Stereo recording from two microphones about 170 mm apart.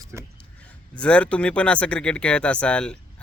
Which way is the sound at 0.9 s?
5° left (ahead or behind).